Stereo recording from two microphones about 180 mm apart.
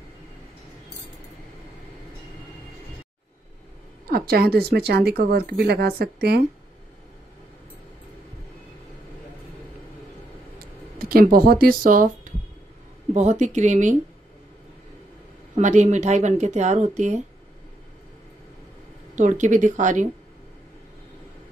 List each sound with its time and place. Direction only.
4.1 s speech: 60° right (ahead or behind)
11.0 s speech: 55° right (ahead or behind)
15.5 s speech: 40° right (ahead or behind)
19.1 s speech: 45° right (ahead or behind)